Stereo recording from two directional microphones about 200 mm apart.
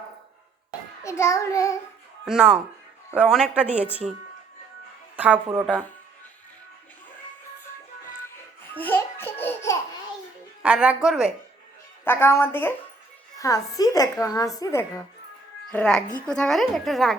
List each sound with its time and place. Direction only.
1.0 s a woman's voice: 15° left (ahead or behind)
2.2 s a woman's voice: 5° right (ahead or behind)
5.1 s a woman's voice: 5° right (ahead or behind)
8.7 s laughter: 10° left (ahead or behind)
10.6 s a woman's voice: 5° right (ahead or behind)
12.0 s a woman's voice: 10° left (ahead or behind)